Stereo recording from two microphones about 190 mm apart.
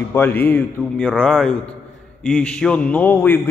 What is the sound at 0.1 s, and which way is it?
A man's voice, 10° left (ahead or behind).